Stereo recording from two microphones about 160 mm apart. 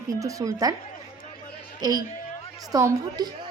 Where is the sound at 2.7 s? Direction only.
20° right (ahead or behind).